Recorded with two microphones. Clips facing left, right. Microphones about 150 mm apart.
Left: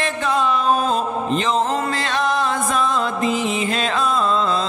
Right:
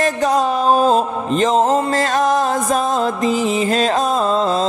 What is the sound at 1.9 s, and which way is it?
Music, 45° right (ahead or behind).